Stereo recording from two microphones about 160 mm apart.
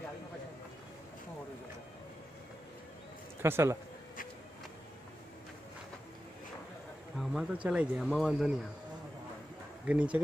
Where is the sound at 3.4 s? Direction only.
15° right (ahead or behind).